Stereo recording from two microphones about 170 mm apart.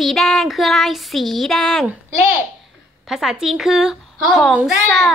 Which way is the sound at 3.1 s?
Centre (ahead or behind).